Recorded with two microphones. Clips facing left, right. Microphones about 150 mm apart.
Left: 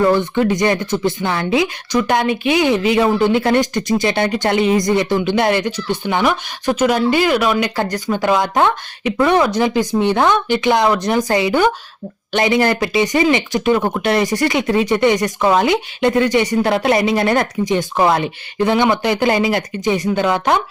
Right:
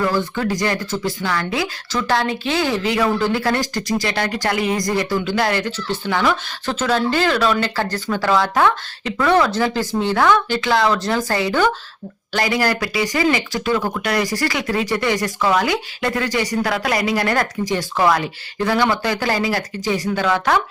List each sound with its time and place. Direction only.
0.0 s speech: 20° left (ahead or behind)